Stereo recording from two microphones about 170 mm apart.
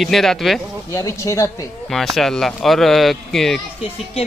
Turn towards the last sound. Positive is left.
turn(degrees=0)  # may be behind; listen again after turning